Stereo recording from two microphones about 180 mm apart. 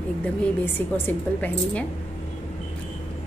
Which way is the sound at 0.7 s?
10° left (ahead or behind).